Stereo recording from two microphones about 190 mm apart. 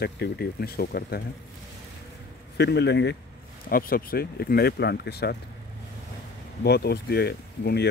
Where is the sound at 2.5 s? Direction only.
60° left (ahead or behind).